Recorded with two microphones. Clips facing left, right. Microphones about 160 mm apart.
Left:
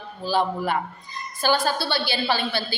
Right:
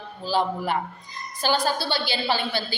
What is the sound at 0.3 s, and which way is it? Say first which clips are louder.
A woman's voice: left 1 dB; 15° right (ahead or behind).